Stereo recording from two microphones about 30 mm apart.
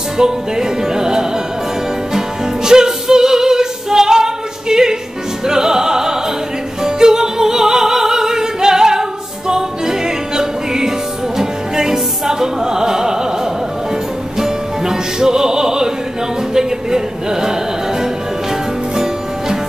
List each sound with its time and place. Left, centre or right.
0.2 s music: centre
5.5 s opera: centre
6.8 s music: centre
14.4 s music: centre
16.5 s a sound: right